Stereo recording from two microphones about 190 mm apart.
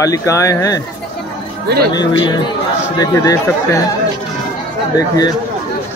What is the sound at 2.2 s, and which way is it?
Speech, 25° left (ahead or behind).